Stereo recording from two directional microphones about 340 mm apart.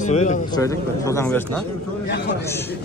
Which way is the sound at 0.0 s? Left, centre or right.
Centre.